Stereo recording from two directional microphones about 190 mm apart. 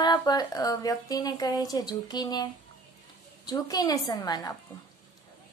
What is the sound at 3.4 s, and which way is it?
Speech, 20° left (ahead or behind).